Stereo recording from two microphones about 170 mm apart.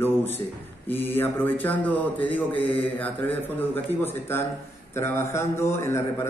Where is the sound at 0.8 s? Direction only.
10° left (ahead or behind).